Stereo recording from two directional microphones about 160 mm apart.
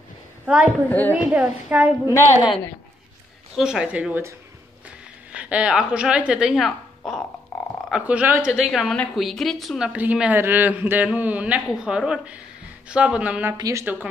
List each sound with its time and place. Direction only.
0.5 s a woman's voice: 5° right (ahead or behind)
0.8 s a woman's voice: 10° left (ahead or behind)
1.1 s a woman's voice: 5° right (ahead or behind)
3.5 s a woman's voice: 5° right (ahead or behind)
7.5 s a sound: 5° left (ahead or behind)
7.9 s a woman's voice: 10° right (ahead or behind)